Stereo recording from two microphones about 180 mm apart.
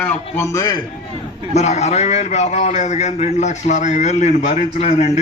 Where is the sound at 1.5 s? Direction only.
40° left (ahead or behind).